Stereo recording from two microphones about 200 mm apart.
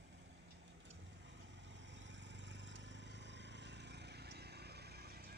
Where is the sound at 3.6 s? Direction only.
55° right (ahead or behind).